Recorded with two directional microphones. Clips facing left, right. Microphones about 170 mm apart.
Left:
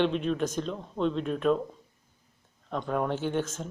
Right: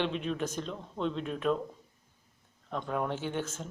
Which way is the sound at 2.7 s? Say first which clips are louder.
Left 4 dB; 5° right (ahead or behind).